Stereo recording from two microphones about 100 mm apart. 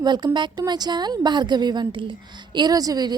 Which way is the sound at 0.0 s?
45° right (ahead or behind).